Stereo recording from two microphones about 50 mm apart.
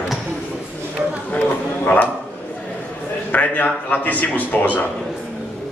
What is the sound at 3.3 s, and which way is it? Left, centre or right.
A man's voice, left.